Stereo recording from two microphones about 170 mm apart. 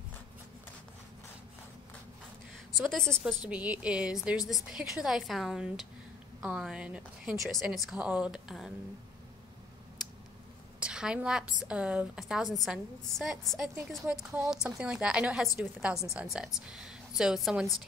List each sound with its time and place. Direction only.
2.8 s a woman's voice: centre (ahead or behind)
10.8 s a woman's voice: 5° right (ahead or behind)